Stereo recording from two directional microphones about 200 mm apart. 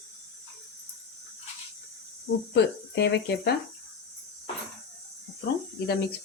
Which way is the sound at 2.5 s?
60° left (ahead or behind).